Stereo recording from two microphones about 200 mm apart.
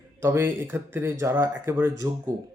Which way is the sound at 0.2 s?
10° right (ahead or behind).